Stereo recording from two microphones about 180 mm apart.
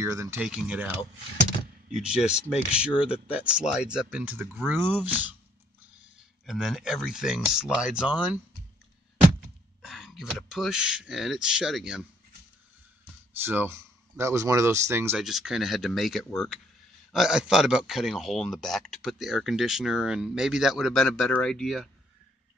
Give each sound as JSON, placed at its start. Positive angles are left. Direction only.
{"t": 0.0, "sound": "speech", "side_deg": -15}
{"t": 6.4, "sound": "speech", "side_deg": 0}
{"t": 9.8, "sound": "speech", "side_deg": 0}
{"t": 13.4, "sound": "speech", "side_deg": -10}
{"t": 15.2, "sound": "speech", "side_deg": 0}